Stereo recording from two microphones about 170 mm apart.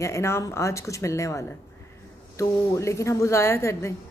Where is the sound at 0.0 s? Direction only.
15° left (ahead or behind).